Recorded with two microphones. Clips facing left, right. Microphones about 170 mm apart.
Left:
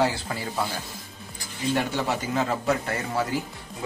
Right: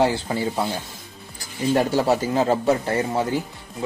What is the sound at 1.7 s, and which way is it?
A man's voice, 35° right (ahead or behind).